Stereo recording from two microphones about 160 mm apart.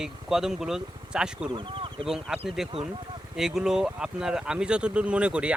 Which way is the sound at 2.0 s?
5° right (ahead or behind).